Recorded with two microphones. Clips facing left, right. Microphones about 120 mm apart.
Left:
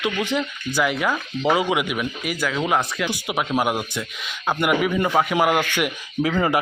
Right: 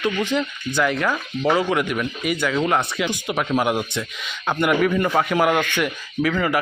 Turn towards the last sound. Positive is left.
turn(degrees=25)  # may be behind; listen again after turning